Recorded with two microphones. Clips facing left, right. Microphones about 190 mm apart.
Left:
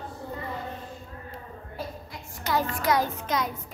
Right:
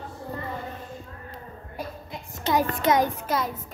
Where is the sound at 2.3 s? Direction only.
20° right (ahead or behind).